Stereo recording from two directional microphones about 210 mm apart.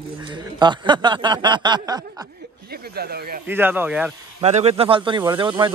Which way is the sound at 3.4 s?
10° right (ahead or behind).